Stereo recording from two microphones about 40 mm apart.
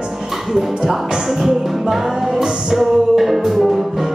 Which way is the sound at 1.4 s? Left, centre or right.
Centre.